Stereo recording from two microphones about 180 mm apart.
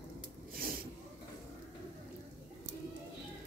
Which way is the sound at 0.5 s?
55° right (ahead or behind).